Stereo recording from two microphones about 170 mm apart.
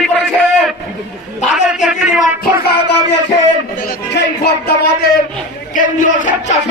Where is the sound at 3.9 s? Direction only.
75° left (ahead or behind).